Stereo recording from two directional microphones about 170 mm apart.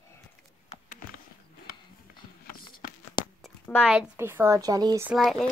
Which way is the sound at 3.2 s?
25° left (ahead or behind).